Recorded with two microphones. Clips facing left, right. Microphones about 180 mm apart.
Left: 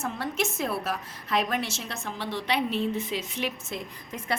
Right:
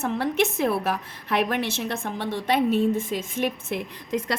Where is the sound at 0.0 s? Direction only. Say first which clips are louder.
Right 6 dB; 60° right (ahead or behind).